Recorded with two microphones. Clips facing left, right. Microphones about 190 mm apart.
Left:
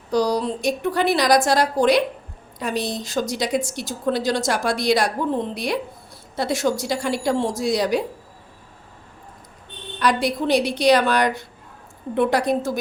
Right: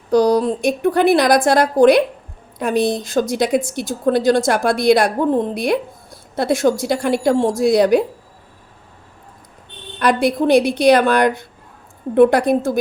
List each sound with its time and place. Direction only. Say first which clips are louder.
0.1 s a woman's voice: right 6 dB; 55° right (ahead or behind)
10.0 s a woman's voice: right 5 dB; 55° right (ahead or behind)